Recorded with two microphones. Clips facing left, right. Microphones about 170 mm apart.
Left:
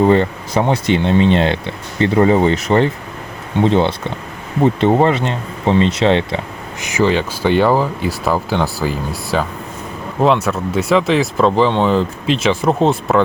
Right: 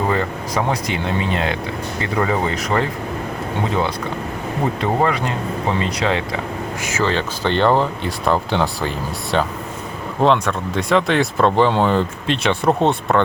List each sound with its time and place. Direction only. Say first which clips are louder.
0.1 s speech: left 7 dB; 30° left (ahead or behind)
6.8 s speech: left 6 dB; 15° left (ahead or behind)